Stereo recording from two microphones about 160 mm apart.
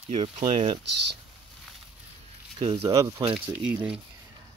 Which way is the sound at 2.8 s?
20° right (ahead or behind).